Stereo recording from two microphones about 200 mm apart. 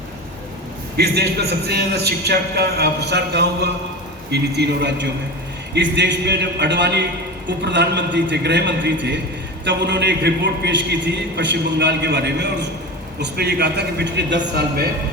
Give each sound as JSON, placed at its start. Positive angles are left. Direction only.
{"t": 0.9, "sound": "a man's voice", "side_deg": -55}